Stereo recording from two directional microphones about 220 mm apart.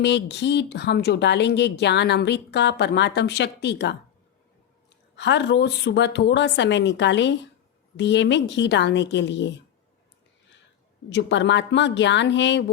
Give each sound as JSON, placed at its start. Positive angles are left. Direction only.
{"t": 0.0, "sound": "speech", "side_deg": 50}
{"t": 5.1, "sound": "speech", "side_deg": 55}
{"t": 11.1, "sound": "speech", "side_deg": 55}